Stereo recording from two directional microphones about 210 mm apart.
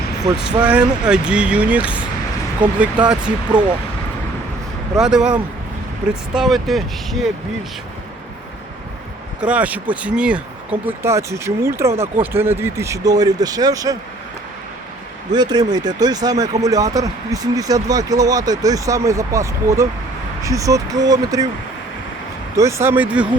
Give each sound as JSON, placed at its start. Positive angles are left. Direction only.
{"t": 0.3, "sound": "speech", "side_deg": -5}
{"t": 4.9, "sound": "speech", "side_deg": -5}
{"t": 6.3, "sound": "speech", "side_deg": 0}
{"t": 9.5, "sound": "speech", "side_deg": -5}
{"t": 15.3, "sound": "speech", "side_deg": -20}
{"t": 22.5, "sound": "speech", "side_deg": -15}